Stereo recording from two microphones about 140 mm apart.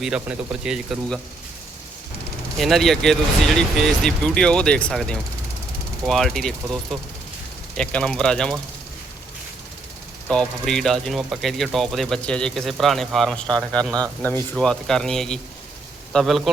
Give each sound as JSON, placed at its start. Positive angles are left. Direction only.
{"t": 0.0, "sound": "speech", "side_deg": -5}
{"t": 2.6, "sound": "speech", "side_deg": 0}
{"t": 10.2, "sound": "speech", "side_deg": 5}